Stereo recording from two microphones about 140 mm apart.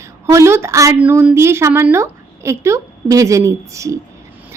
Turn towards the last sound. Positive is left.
turn(degrees=-20)  # may be behind; listen again after turning